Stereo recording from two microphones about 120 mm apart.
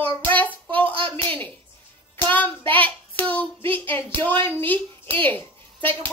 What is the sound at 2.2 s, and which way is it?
Hands, 15° left (ahead or behind).